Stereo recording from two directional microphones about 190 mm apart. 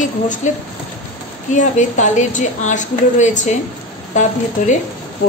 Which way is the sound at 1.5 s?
40° left (ahead or behind).